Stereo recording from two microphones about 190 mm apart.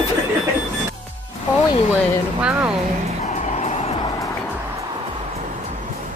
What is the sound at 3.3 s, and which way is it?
Vehicle, 35° left (ahead or behind).